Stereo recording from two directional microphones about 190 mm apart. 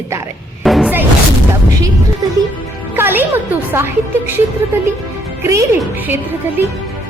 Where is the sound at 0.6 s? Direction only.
Centre (ahead or behind).